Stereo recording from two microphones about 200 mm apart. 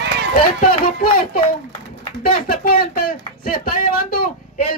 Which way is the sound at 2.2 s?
45° left (ahead or behind).